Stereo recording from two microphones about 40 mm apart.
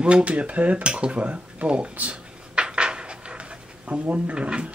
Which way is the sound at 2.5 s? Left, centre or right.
Right.